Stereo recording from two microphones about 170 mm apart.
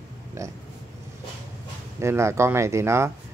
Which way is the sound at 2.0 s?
15° right (ahead or behind).